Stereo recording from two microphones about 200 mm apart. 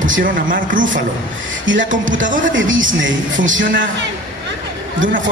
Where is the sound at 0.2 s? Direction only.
45° right (ahead or behind).